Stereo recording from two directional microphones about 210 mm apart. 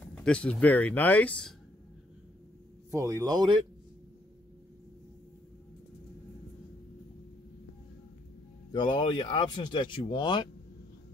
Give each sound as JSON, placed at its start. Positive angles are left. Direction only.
{"t": 0.1, "sound": "speech", "side_deg": 5}
{"t": 2.9, "sound": "a man's voice", "side_deg": -15}
{"t": 8.7, "sound": "speech", "side_deg": 20}